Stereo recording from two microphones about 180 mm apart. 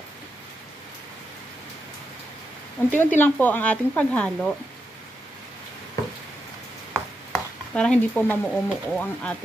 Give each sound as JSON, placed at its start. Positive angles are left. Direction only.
{"t": 2.9, "sound": "speech", "side_deg": 10}
{"t": 6.9, "sound": "speech", "side_deg": 5}